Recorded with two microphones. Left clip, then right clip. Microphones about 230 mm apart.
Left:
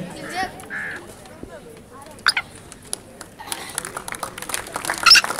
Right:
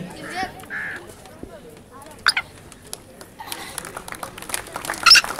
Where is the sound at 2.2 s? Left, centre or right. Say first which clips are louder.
Even; centre.